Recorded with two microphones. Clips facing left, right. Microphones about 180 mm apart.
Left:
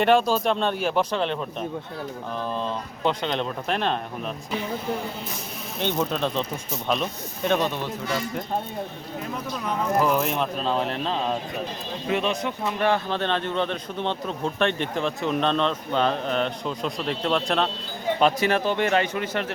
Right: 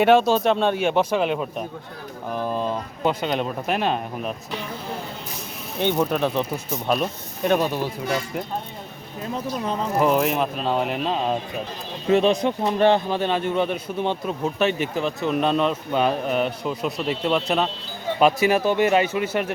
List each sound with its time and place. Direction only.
0.5 s speech: 10° right (ahead or behind)
5.8 s speech: 10° right (ahead or behind)
9.3 s speech: 30° right (ahead or behind)
10.2 s speech: 5° right (ahead or behind)
12.1 s speech: 35° right (ahead or behind)
13.1 s speech: 10° right (ahead or behind)